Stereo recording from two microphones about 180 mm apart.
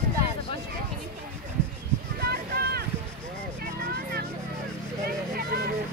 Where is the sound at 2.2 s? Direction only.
60° right (ahead or behind).